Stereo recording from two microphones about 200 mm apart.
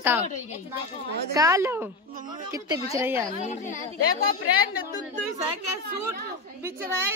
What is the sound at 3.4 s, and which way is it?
Speech, 35° left (ahead or behind).